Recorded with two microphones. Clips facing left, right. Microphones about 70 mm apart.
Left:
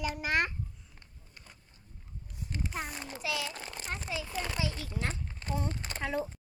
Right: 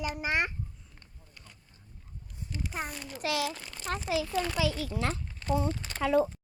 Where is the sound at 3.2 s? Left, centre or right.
Right.